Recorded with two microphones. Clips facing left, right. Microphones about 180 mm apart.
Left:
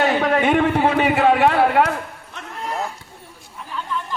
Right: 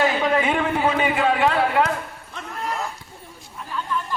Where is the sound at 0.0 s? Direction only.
55° left (ahead or behind).